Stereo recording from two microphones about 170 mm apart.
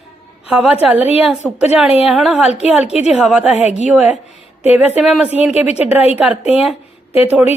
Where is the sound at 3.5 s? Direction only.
40° left (ahead or behind).